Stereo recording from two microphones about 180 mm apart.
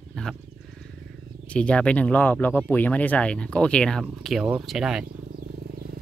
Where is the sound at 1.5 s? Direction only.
5° left (ahead or behind).